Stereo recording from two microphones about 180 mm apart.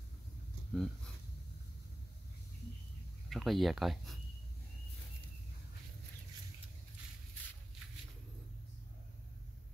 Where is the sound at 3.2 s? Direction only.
Centre (ahead or behind).